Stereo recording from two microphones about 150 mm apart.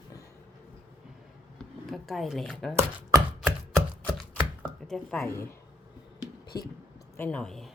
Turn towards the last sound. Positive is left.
turn(degrees=5)  # may be behind; listen again after turning